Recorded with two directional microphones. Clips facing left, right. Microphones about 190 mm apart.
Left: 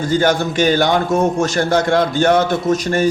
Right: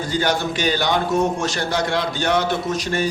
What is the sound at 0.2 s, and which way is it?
A man's voice, 50° left (ahead or behind).